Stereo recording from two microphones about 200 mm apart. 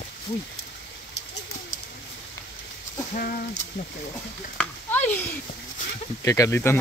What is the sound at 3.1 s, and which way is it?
Speech, 45° left (ahead or behind).